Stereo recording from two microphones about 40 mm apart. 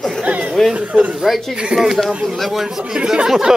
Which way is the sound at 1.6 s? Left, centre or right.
Centre.